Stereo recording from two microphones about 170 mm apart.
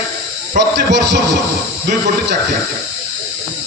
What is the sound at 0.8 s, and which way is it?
Speech, 90° right.